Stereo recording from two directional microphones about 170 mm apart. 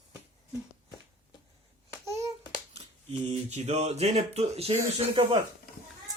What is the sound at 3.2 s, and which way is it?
Speech, 40° right (ahead or behind).